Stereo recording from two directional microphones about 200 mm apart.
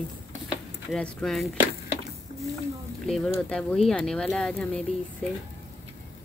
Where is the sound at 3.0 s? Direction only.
Centre (ahead or behind).